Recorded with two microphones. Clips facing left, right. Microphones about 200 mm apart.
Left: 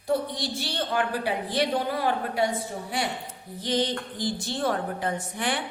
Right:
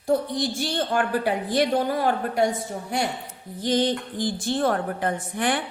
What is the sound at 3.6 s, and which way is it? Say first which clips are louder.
A woman's voice: right 4 dB; 50° right (ahead or behind).